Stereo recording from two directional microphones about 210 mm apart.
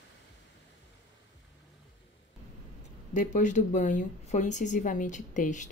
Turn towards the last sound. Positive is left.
turn(degrees=35)  # may be behind; listen again after turning